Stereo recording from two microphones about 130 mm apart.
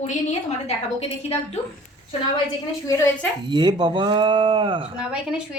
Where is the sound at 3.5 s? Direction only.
35° right (ahead or behind).